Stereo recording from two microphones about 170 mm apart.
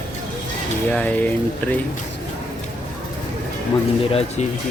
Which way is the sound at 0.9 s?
10° left (ahead or behind).